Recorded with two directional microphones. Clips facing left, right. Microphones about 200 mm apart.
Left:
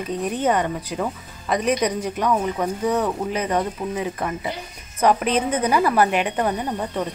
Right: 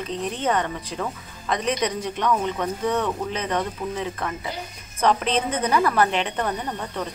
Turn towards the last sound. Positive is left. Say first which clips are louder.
# left 4 dB
turn(degrees=15)  # may be behind; listen again after turning